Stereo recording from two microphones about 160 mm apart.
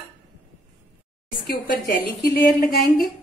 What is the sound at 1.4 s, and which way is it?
A woman's voice, 65° left (ahead or behind).